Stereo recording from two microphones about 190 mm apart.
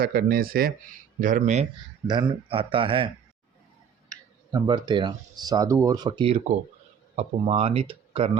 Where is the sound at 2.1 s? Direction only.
25° right (ahead or behind).